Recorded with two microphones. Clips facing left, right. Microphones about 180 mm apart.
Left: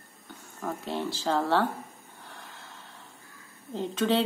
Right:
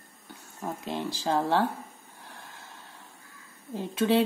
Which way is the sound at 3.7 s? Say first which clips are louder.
Right 1 dB; 10° right (ahead or behind).